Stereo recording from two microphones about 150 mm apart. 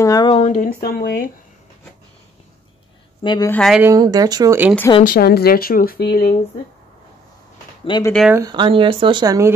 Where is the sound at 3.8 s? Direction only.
25° right (ahead or behind).